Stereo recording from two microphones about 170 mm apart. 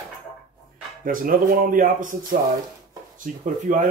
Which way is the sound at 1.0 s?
55° right (ahead or behind).